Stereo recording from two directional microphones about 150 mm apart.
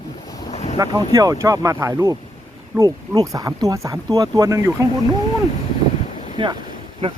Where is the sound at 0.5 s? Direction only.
45° left (ahead or behind).